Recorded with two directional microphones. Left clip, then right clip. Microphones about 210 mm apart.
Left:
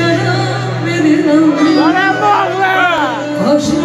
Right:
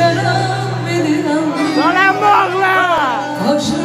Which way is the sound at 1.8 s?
40° right (ahead or behind).